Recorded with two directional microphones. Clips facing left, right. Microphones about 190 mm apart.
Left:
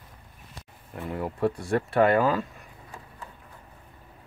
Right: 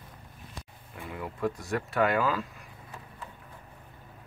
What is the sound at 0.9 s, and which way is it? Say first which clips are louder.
Speech: left 7 dB; 40° left (ahead or behind).